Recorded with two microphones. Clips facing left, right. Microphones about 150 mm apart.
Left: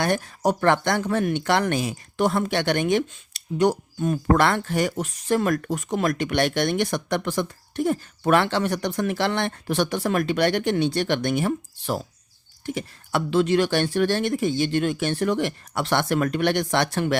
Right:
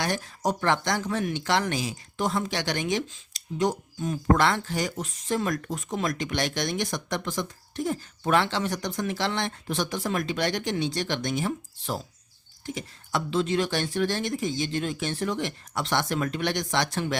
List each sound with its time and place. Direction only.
0.0 s speech: 55° left (ahead or behind)